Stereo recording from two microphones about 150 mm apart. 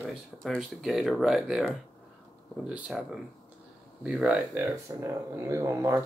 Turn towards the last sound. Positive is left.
turn(degrees=-20)  # may be behind; listen again after turning